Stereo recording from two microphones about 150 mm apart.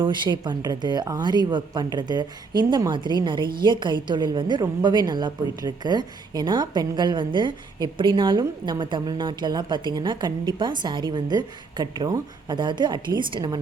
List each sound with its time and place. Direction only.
0.0 s speech: 30° right (ahead or behind)